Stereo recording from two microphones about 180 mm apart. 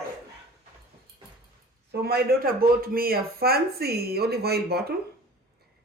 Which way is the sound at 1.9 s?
65° right (ahead or behind).